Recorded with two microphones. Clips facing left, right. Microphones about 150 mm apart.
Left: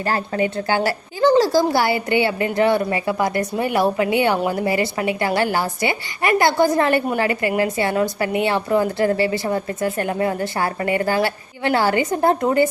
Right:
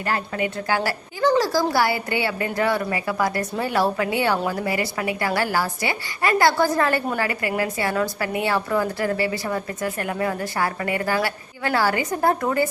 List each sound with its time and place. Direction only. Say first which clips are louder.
0.0 s a woman's voice: left 4 dB; 30° left (ahead or behind)